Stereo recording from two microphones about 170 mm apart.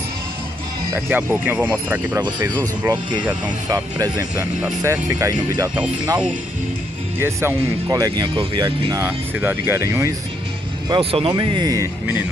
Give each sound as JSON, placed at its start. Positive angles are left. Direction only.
{"t": 0.9, "sound": "speech", "side_deg": -10}
{"t": 2.6, "sound": "speech", "side_deg": -20}
{"t": 7.2, "sound": "speech", "side_deg": -15}
{"t": 9.0, "sound": "speech", "side_deg": -10}
{"t": 10.9, "sound": "speech", "side_deg": -35}